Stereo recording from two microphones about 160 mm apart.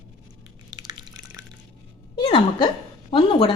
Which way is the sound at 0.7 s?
25° right (ahead or behind).